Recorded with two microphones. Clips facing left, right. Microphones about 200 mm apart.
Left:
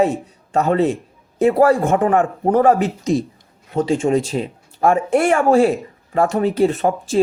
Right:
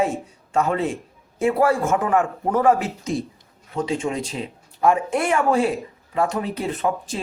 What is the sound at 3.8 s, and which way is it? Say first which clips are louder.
Speech: left 7 dB; 45° left (ahead or behind).